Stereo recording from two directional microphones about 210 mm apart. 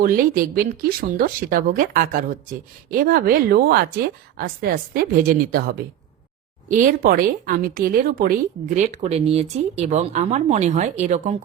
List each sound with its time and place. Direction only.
0.0 s a woman's voice: 45° right (ahead or behind)
6.7 s a woman's voice: 40° right (ahead or behind)